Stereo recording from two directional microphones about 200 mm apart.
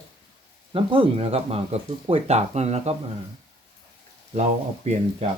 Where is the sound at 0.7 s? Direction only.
25° right (ahead or behind).